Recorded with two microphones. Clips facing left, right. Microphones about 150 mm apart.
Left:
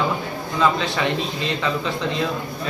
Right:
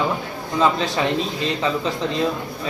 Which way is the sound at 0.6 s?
35° right (ahead or behind).